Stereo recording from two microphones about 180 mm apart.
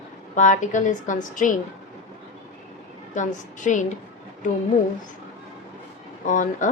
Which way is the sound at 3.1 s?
45° left (ahead or behind).